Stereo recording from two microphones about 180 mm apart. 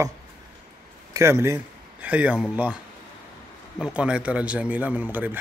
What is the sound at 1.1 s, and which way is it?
A man's voice, 15° right (ahead or behind).